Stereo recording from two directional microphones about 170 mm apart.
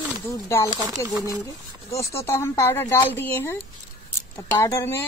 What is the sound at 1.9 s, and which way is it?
Speech, 15° left (ahead or behind).